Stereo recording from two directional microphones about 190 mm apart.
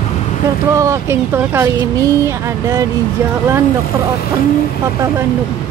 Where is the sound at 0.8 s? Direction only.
15° right (ahead or behind).